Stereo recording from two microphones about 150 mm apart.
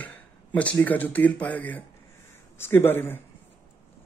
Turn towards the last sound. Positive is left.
turn(degrees=15)  # may be behind; listen again after turning